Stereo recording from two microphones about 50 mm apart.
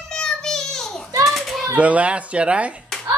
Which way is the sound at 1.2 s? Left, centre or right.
Centre.